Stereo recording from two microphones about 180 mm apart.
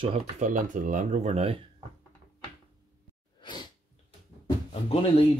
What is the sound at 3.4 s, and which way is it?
Sneeze, 25° left (ahead or behind).